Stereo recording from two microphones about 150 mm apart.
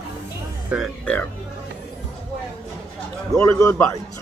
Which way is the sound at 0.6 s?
5° right (ahead or behind).